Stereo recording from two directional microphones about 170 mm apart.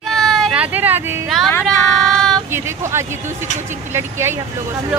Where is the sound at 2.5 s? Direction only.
15° right (ahead or behind).